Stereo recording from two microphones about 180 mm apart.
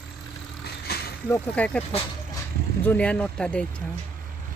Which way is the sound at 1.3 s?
10° left (ahead or behind).